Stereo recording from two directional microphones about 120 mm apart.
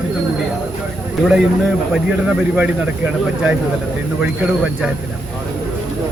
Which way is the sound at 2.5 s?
10° right (ahead or behind).